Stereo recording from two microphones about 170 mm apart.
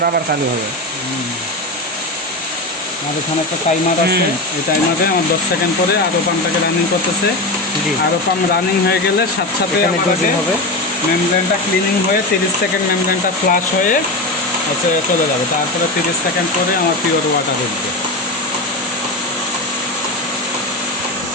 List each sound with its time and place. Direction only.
13.1 s speech: 55° left (ahead or behind)